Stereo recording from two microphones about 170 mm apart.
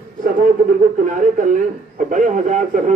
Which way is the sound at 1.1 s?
50° right (ahead or behind).